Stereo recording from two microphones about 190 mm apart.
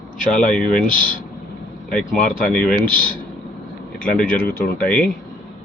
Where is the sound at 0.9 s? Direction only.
45° left (ahead or behind).